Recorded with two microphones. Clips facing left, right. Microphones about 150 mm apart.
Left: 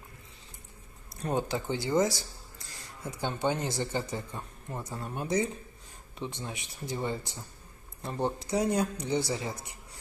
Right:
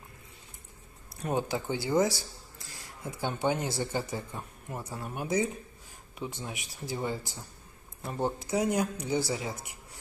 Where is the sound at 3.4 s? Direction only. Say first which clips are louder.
Right 1 dB; 10° right (ahead or behind).